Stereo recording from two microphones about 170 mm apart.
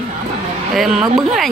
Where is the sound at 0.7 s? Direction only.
Centre (ahead or behind).